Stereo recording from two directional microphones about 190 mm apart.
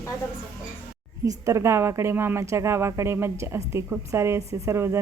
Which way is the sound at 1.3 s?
15° right (ahead or behind).